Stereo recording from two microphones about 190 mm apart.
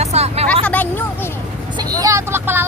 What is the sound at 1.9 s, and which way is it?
Speech, 15° right (ahead or behind).